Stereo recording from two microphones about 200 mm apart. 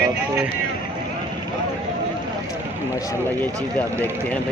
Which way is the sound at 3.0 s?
15° left (ahead or behind).